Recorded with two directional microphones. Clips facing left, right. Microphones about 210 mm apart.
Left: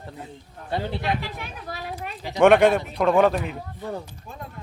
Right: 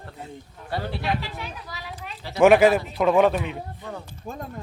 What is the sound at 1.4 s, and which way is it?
Speech, 55° left (ahead or behind).